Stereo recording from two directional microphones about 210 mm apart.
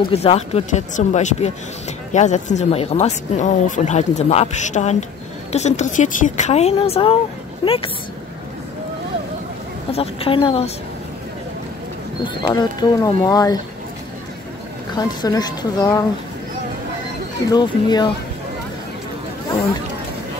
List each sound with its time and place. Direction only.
0.1 s a woman's voice: 30° left (ahead or behind)
9.9 s a woman's voice: 25° left (ahead or behind)
12.4 s speech: 15° left (ahead or behind)
15.0 s speech: 20° left (ahead or behind)
17.5 s a woman's voice: 20° left (ahead or behind)